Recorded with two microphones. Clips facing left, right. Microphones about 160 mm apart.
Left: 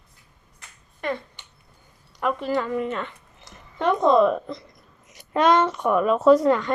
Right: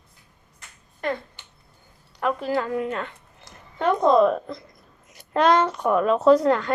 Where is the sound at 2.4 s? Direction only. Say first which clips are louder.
Even; 40° right (ahead or behind).